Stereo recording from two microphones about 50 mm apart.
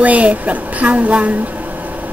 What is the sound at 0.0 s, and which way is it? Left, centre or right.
A woman's voice, right.